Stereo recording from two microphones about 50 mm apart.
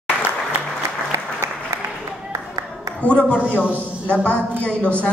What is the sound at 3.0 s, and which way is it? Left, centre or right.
Speech, left.